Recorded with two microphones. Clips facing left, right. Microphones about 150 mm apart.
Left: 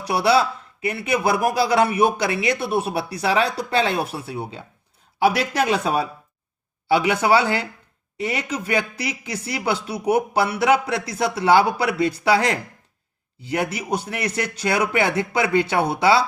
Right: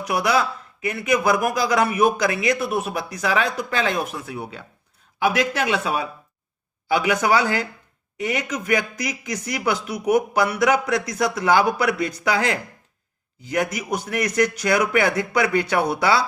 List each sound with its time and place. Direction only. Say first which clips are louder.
0.0 s speech: left 3 dB; 30° left (ahead or behind)